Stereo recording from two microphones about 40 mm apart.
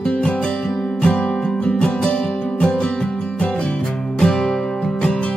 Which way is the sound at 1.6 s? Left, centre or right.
Left.